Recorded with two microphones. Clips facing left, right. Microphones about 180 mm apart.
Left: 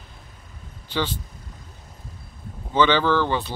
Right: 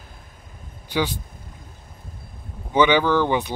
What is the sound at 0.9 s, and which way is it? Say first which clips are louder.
Speech: right 3 dB; 10° right (ahead or behind).